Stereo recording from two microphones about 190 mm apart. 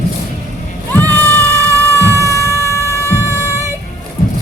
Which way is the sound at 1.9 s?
15° left (ahead or behind).